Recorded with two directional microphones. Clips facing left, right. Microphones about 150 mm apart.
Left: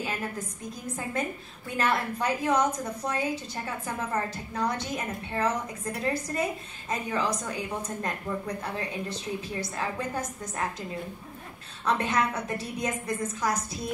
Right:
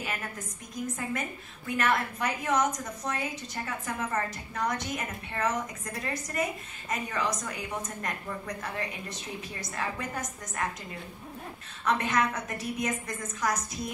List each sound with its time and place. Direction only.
1.8 s a woman's voice: 30° left (ahead or behind)
11.8 s a woman's voice: 30° left (ahead or behind)